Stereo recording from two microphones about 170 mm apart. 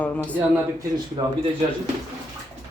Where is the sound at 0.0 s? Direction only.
10° left (ahead or behind).